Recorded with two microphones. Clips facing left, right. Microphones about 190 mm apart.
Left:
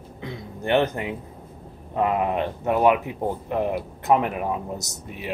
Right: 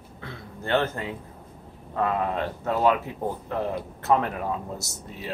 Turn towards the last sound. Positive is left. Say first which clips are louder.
# left 2 dB
turn(degrees=15)  # may be behind; listen again after turning